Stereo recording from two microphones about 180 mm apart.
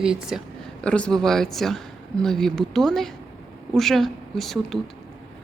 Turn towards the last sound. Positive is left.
turn(degrees=0)  # may be behind; listen again after turning